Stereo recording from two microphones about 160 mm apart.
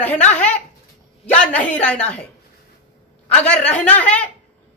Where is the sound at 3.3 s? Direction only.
5° left (ahead or behind).